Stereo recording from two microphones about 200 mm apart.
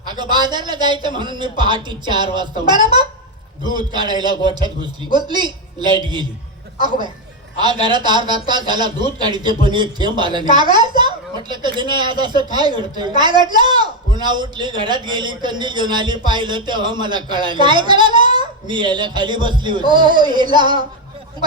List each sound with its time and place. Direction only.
0.1 s a man's voice: 20° right (ahead or behind)
7.6 s a man's voice: 20° right (ahead or behind)